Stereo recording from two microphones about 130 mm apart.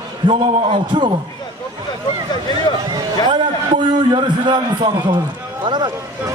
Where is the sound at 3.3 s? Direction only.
35° right (ahead or behind).